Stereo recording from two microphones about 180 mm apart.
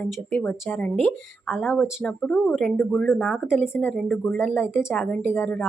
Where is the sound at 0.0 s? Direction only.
10° left (ahead or behind).